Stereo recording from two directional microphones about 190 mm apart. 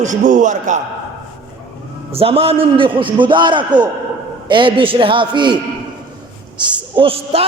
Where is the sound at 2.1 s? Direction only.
30° right (ahead or behind).